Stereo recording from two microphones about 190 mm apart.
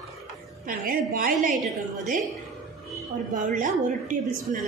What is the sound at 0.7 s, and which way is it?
Speech, 45° right (ahead or behind).